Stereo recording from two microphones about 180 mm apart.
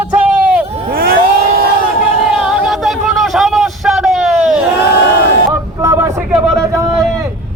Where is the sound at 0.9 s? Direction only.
55° right (ahead or behind).